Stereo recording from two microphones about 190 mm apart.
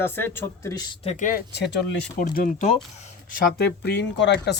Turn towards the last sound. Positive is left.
turn(degrees=65)  # may be behind; listen again after turning